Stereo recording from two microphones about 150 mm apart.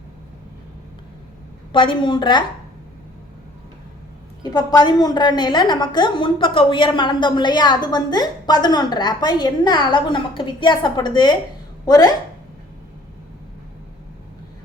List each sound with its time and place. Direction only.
1.7 s a woman's voice: 35° left (ahead or behind)
4.4 s a woman's voice: 25° left (ahead or behind)